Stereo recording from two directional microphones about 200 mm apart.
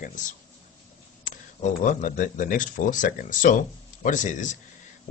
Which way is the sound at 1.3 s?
40° left (ahead or behind).